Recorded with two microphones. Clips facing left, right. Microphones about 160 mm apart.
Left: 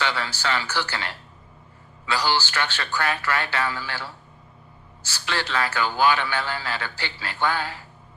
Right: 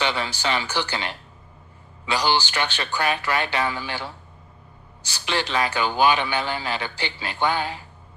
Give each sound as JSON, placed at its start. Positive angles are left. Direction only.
{"t": 0.0, "sound": "a man's voice", "side_deg": -20}